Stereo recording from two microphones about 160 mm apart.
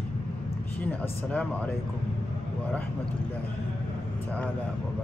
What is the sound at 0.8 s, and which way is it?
Speech, 10° left (ahead or behind).